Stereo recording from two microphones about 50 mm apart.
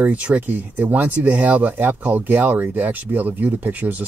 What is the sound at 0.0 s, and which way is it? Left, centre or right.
Speech, right.